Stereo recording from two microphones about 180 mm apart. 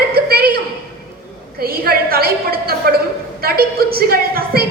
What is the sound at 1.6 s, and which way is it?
A woman's voice, 55° right (ahead or behind).